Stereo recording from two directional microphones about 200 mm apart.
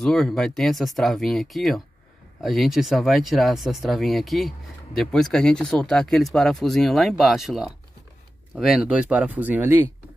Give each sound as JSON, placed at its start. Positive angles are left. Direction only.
{"t": 0.0, "sound": "speech", "side_deg": 0}